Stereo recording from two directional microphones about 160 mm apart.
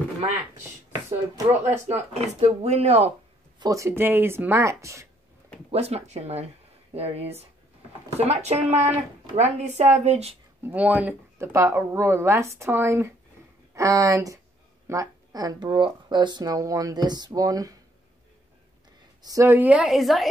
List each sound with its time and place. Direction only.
1.6 s speech: 45° right (ahead or behind)
3.5 s speech: 20° right (ahead or behind)
5.7 s speech: 40° right (ahead or behind)
10.6 s speech: 10° right (ahead or behind)
19.2 s speech: 20° right (ahead or behind); by 20.2 s centre (ahead or behind)